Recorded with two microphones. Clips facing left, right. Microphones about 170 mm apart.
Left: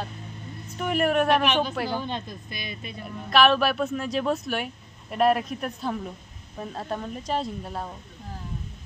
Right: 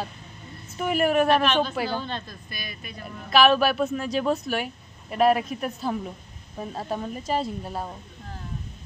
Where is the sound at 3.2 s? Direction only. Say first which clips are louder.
Right 1 dB; centre (ahead or behind).